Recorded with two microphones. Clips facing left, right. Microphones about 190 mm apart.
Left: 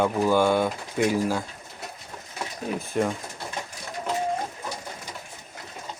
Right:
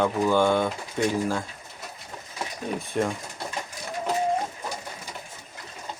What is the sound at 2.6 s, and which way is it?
Speech, centre (ahead or behind).